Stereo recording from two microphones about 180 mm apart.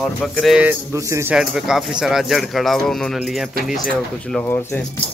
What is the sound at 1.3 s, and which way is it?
Speech, 5° right (ahead or behind).